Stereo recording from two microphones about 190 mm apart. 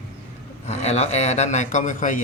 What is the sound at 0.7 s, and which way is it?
Speech, 35° left (ahead or behind).